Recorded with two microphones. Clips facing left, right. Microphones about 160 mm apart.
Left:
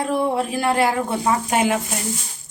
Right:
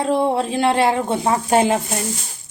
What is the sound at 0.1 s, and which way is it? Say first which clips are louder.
Speech: right 3 dB; 25° right (ahead or behind).